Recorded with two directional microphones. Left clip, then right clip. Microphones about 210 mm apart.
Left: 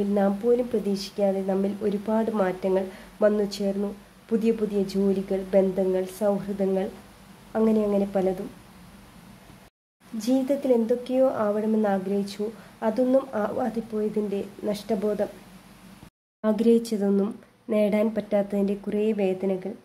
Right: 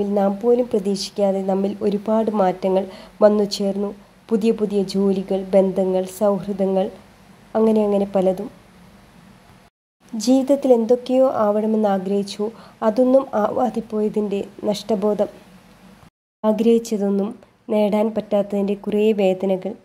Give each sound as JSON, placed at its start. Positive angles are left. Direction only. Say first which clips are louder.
{"t": 0.1, "sound": "speech", "louder": "right 5 dB", "side_deg": -20}
{"t": 10.1, "sound": "speech", "louder": "right 7 dB", "side_deg": -25}
{"t": 16.3, "sound": "speech", "louder": "right 5 dB", "side_deg": -15}